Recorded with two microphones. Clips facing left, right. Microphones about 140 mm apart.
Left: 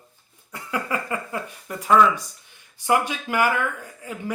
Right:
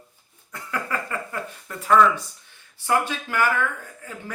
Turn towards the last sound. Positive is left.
turn(degrees=15)  # may be behind; listen again after turning